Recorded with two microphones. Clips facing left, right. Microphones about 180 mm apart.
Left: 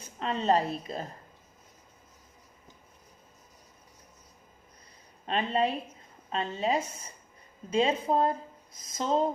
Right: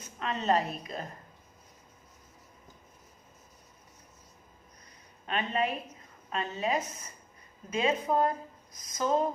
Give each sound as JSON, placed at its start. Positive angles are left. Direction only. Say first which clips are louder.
{"t": 0.0, "sound": "a woman's voice", "louder": "left 2 dB", "side_deg": 30}
{"t": 5.2, "sound": "a woman's voice", "louder": "left 3 dB", "side_deg": 30}